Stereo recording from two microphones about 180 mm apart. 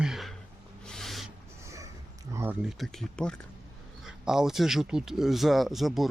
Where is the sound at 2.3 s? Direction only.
15° right (ahead or behind).